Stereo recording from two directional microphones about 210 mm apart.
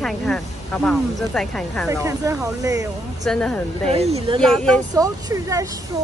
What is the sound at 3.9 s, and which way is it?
Speech, 30° right (ahead or behind).